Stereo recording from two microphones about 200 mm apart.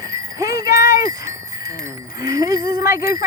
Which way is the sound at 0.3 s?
15° right (ahead or behind).